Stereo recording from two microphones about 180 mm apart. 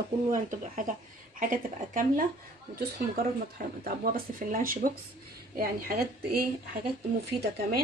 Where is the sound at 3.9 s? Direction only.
55° right (ahead or behind).